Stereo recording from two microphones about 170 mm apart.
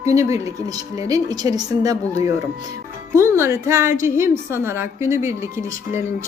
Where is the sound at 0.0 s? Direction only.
20° right (ahead or behind).